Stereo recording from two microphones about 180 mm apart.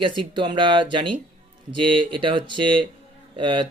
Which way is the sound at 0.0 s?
25° right (ahead or behind).